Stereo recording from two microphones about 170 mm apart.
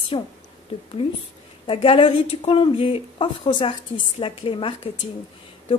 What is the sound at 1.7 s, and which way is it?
A woman's voice, 30° left (ahead or behind).